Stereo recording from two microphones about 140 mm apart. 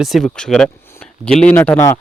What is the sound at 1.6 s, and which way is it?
Speech, 20° left (ahead or behind).